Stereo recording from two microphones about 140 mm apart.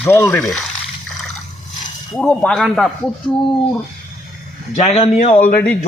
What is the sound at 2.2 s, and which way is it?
Speech, 5° left (ahead or behind).